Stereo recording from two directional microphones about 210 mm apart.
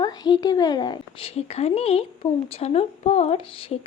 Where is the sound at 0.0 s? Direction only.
20° left (ahead or behind).